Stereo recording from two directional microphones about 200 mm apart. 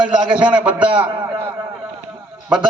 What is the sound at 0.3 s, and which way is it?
Speech, 5° right (ahead or behind).